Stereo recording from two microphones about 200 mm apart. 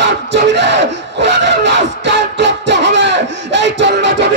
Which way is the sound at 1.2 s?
60° right (ahead or behind).